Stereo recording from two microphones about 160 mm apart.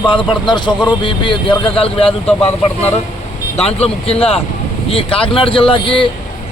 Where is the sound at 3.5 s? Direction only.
40° left (ahead or behind).